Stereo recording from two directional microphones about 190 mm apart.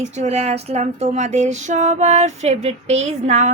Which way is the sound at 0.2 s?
35° right (ahead or behind).